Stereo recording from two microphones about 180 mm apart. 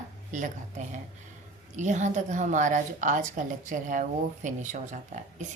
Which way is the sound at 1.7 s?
40° right (ahead or behind).